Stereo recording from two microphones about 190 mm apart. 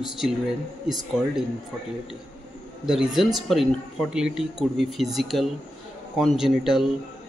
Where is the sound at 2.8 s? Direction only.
5° right (ahead or behind).